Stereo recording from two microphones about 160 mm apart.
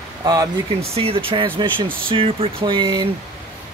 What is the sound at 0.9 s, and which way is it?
Speech, 35° right (ahead or behind).